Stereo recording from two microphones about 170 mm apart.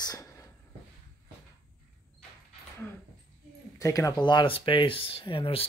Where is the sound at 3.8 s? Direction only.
20° left (ahead or behind).